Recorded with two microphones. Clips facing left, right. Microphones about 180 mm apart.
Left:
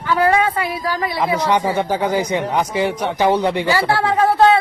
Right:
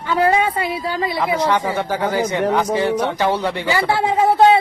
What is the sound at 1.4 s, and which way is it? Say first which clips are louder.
Speech: left 1 dB; 20° left (ahead or behind).